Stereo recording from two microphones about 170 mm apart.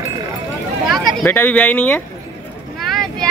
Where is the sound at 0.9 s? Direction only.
Centre (ahead or behind).